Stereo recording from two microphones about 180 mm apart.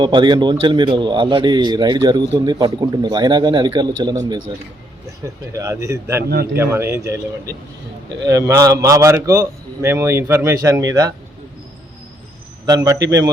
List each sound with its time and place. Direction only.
0.0 s a man's voice: 25° right (ahead or behind)
6.2 s a man's voice: 60° right (ahead or behind)
6.5 s a man's voice: 15° right (ahead or behind)
12.6 s speech: 20° right (ahead or behind)